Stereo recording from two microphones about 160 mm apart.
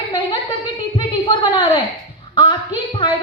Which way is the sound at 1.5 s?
30° left (ahead or behind).